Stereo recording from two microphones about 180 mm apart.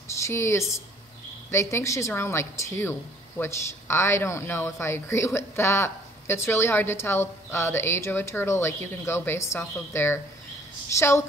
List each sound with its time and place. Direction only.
0.2 s a woman's voice: 15° left (ahead or behind)